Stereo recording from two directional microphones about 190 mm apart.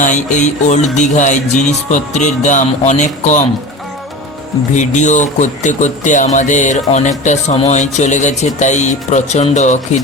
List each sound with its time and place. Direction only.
0.0 s speech: 40° left (ahead or behind)
4.7 s speech: 40° left (ahead or behind)